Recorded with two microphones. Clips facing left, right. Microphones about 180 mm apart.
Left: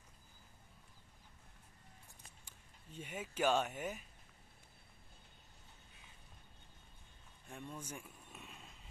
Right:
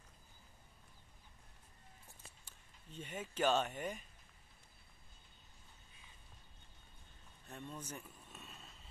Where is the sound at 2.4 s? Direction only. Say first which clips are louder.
Left 1 dB; 10° left (ahead or behind).